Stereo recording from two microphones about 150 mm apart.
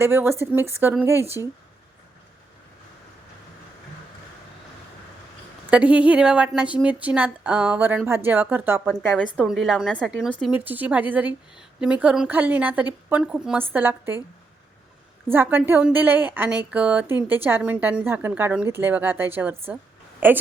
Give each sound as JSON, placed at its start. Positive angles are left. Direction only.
{"t": 0.0, "sound": "a woman's voice", "side_deg": -15}
{"t": 5.7, "sound": "a woman's voice", "side_deg": -10}
{"t": 9.0, "sound": "a woman's voice", "side_deg": 10}
{"t": 9.4, "sound": "a woman's voice", "side_deg": 0}
{"t": 10.5, "sound": "a woman's voice", "side_deg": -10}
{"t": 15.3, "sound": "a woman's voice", "side_deg": -15}